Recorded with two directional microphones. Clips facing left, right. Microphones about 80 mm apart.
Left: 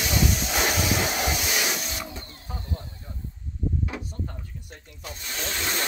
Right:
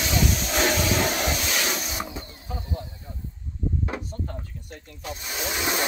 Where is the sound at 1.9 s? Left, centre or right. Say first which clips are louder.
Right 3 dB; centre.